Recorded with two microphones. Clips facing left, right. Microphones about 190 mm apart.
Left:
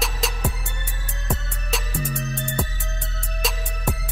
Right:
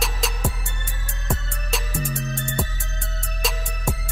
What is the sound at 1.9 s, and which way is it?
Music, 65° left (ahead or behind).